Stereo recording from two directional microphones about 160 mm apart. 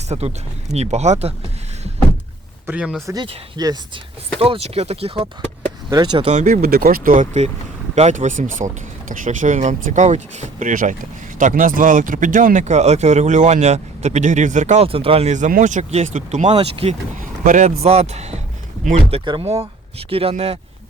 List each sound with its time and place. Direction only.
0.1 s speech: 45° right (ahead or behind)
2.6 s speech: 5° right (ahead or behind)
3.6 s speech: 25° right (ahead or behind)
4.4 s speech: 35° right (ahead or behind)
5.9 s speech: 25° right (ahead or behind)
6.3 s speech: 50° right (ahead or behind)
14.8 s speech: 35° right (ahead or behind)
17.2 s speech: 55° right (ahead or behind)
19.1 s speech: 30° right (ahead or behind)